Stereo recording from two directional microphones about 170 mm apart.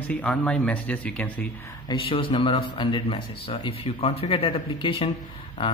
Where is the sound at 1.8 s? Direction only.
30° left (ahead or behind).